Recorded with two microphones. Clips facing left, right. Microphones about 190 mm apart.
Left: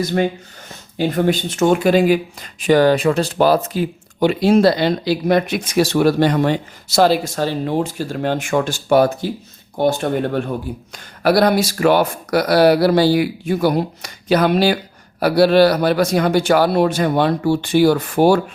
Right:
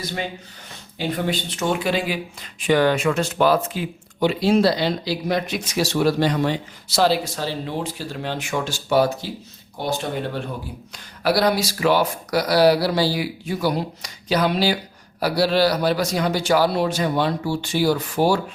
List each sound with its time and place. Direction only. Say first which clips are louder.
0.0 s speech: left 10 dB; 50° left (ahead or behind)